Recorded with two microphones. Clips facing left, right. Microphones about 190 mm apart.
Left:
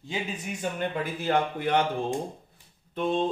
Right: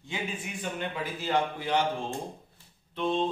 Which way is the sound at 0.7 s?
50° left (ahead or behind).